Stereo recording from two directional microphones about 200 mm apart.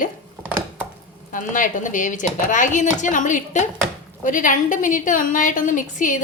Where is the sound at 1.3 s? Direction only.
40° left (ahead or behind).